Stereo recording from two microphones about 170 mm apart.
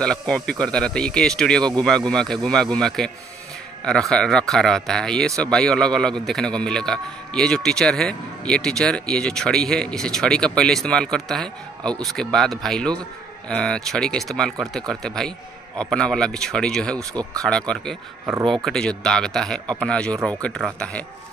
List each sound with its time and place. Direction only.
0.0 s speech: 5° left (ahead or behind)
17.1 s speech: 20° right (ahead or behind)
17.4 s speech: 5° left (ahead or behind)